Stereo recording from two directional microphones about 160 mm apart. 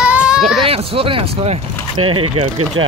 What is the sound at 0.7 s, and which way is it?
Speech, 35° right (ahead or behind).